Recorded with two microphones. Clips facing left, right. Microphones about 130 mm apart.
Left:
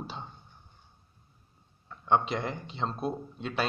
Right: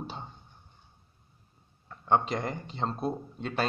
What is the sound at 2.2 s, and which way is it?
A man's voice, 40° right (ahead or behind).